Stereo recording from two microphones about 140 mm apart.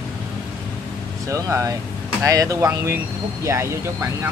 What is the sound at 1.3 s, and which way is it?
Speech, 20° right (ahead or behind).